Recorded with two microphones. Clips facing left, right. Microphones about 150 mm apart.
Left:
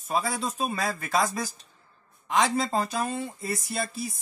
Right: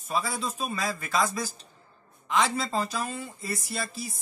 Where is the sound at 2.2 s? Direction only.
50° left (ahead or behind).